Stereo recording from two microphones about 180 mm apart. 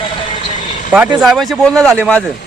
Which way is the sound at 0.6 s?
45° left (ahead or behind).